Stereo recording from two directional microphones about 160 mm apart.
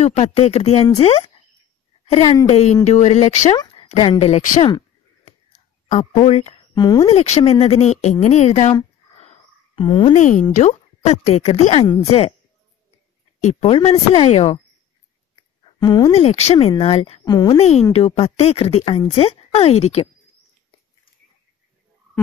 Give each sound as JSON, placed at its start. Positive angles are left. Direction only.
{"t": 0.0, "sound": "a woman's voice", "side_deg": 40}
{"t": 3.5, "sound": "speech", "side_deg": 35}
{"t": 5.2, "sound": "whispering", "side_deg": 45}
{"t": 6.1, "sound": "speech", "side_deg": 40}
{"t": 6.7, "sound": "speech", "side_deg": 25}
{"t": 7.1, "sound": "speech", "side_deg": 40}
{"t": 9.8, "sound": "speech", "side_deg": 30}
{"t": 10.1, "sound": "speech", "side_deg": 50}
{"t": 13.4, "sound": "speech", "side_deg": 40}
{"t": 15.3, "sound": "a sound", "side_deg": 25}
{"t": 16.1, "sound": "speech", "side_deg": 40}
{"t": 17.2, "sound": "speech", "side_deg": 25}
{"t": 17.6, "sound": "speech", "side_deg": 40}